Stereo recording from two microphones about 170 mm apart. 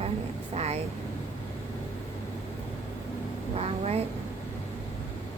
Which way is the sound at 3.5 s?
40° right (ahead or behind).